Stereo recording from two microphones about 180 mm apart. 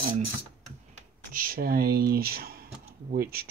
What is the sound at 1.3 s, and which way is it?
Speech, 50° right (ahead or behind).